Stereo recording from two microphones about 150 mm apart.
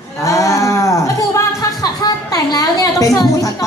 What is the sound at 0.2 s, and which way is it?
Cattle, 20° left (ahead or behind).